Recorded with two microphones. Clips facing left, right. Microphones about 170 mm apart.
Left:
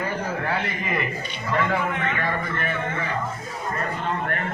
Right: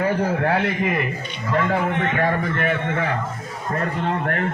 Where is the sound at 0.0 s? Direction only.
65° right (ahead or behind).